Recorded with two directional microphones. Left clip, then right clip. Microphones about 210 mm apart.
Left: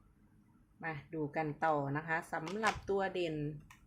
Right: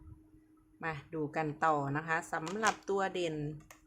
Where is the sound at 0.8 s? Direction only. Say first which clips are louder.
Right 3 dB; 15° right (ahead or behind).